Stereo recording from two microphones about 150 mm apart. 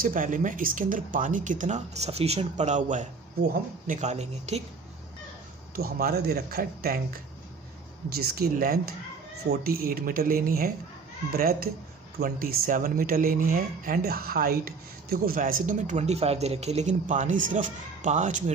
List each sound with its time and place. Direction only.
0.0 s speech: 60° right (ahead or behind)
2.0 s speech: 45° right (ahead or behind)
5.8 s speech: 85° right
8.1 s speech: 90° right; by 16.9 s 45° right (ahead or behind)
17.1 s speech: 60° right (ahead or behind)